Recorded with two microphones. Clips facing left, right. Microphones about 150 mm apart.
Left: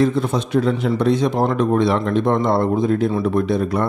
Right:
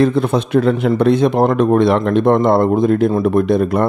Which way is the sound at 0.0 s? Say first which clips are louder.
Right 4 dB; 60° right (ahead or behind).